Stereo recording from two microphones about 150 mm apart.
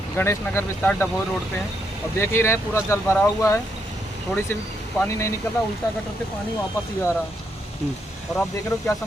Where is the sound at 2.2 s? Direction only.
15° left (ahead or behind).